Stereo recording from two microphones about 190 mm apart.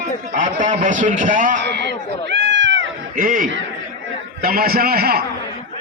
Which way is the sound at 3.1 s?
45° right (ahead or behind).